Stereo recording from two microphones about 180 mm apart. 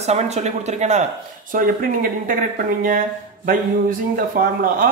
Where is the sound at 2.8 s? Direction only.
50° right (ahead or behind).